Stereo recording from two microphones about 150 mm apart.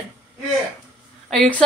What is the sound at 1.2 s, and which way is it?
Speech, 5° left (ahead or behind).